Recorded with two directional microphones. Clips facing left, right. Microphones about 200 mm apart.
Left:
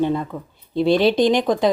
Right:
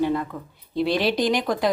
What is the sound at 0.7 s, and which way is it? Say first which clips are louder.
Speech: left 6 dB; centre (ahead or behind).